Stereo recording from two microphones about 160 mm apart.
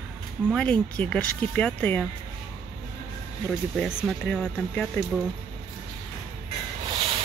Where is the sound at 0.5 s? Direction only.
10° left (ahead or behind).